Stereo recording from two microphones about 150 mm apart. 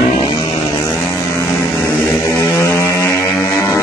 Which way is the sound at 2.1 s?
20° left (ahead or behind).